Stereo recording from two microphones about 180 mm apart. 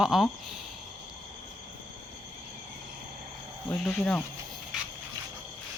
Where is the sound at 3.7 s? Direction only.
5° left (ahead or behind).